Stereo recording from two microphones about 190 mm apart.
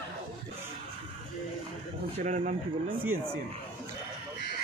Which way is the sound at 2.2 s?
40° right (ahead or behind).